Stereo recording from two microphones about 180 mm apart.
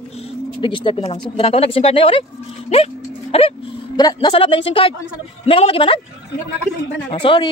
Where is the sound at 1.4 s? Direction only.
30° left (ahead or behind).